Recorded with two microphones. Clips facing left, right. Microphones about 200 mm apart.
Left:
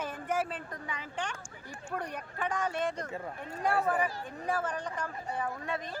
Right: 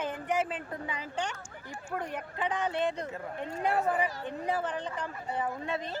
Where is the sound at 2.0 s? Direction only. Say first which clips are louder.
Right 4 dB; 20° right (ahead or behind).